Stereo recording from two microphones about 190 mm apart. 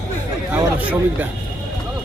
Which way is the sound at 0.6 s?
10° right (ahead or behind).